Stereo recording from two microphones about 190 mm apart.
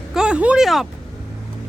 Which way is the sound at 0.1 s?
5° right (ahead or behind).